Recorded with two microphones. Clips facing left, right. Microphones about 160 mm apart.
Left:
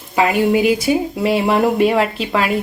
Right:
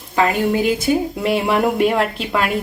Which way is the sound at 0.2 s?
10° left (ahead or behind).